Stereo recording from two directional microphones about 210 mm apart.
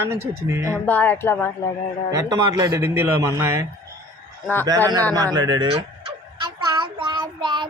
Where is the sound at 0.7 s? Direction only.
5° left (ahead or behind).